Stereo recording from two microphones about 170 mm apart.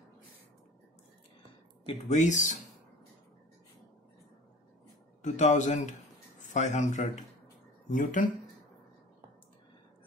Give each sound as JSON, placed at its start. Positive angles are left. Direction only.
{"t": 1.9, "sound": "a man's voice", "side_deg": 45}
{"t": 5.2, "sound": "a man's voice", "side_deg": 45}